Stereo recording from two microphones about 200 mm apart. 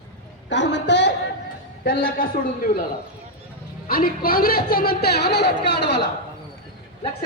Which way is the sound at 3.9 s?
45° left (ahead or behind).